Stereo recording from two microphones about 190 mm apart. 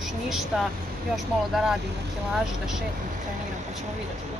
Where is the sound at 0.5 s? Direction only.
5° right (ahead or behind).